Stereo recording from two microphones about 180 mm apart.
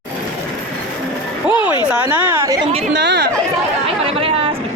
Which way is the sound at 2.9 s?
70° right (ahead or behind).